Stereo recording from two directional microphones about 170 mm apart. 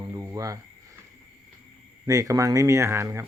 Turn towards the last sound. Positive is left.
turn(degrees=-15)  # may be behind; listen again after turning